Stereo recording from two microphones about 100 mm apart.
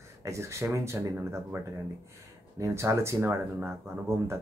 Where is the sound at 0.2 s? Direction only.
30° right (ahead or behind).